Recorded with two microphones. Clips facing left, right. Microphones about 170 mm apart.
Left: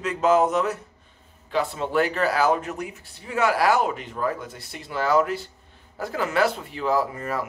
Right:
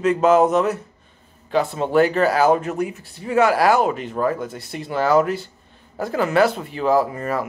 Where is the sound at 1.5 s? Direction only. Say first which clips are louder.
Right 6 dB; 40° right (ahead or behind).